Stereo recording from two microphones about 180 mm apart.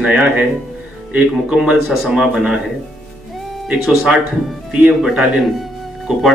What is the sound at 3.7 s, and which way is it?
A man's voice, 5° right (ahead or behind).